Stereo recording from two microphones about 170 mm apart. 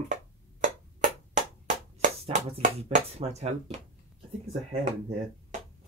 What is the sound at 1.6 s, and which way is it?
Speech, 45° right (ahead or behind).